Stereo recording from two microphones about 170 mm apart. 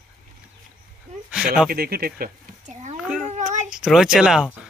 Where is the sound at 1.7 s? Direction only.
60° right (ahead or behind).